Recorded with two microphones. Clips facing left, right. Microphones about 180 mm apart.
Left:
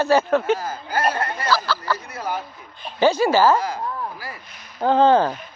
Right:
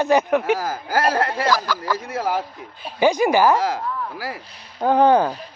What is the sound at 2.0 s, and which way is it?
Speech, 90° right.